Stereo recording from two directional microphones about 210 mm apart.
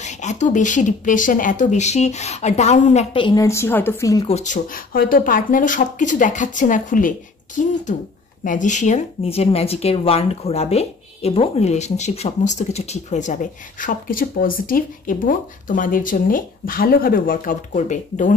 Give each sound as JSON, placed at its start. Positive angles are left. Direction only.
{"t": 0.0, "sound": "speech", "side_deg": 35}
{"t": 4.3, "sound": "speech", "side_deg": 35}